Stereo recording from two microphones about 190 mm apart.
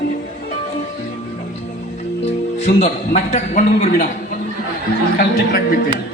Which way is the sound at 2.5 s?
35° left (ahead or behind).